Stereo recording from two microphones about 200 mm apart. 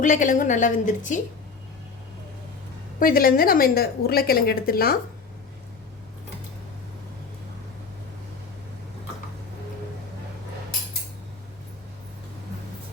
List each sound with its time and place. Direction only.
0.0 s a woman's voice: 40° left (ahead or behind)
3.0 s a woman's voice: 45° left (ahead or behind)